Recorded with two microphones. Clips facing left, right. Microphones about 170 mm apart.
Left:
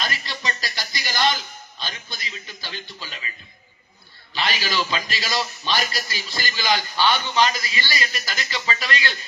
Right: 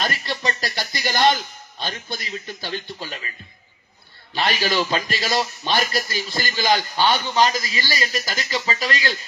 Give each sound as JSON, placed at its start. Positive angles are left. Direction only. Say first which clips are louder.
{"t": 0.0, "sound": "music", "louder": "right 4 dB", "side_deg": -55}
{"t": 1.8, "sound": "a man's voice", "louder": "right 6 dB", "side_deg": -50}
{"t": 4.4, "sound": "a man's voice", "louder": "right 4 dB", "side_deg": -50}